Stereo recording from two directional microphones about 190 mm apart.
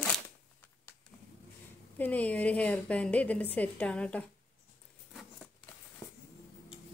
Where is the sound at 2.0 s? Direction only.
10° left (ahead or behind).